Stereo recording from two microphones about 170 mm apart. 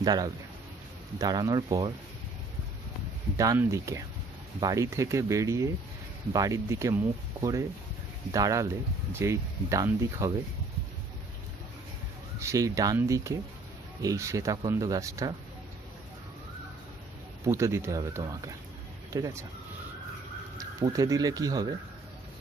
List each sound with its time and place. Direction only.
0.0 s speech: 25° right (ahead or behind)
3.3 s speech: 20° right (ahead or behind)
12.4 s speech: 20° right (ahead or behind)
17.5 s speech: 15° right (ahead or behind)
20.5 s speech: 20° right (ahead or behind)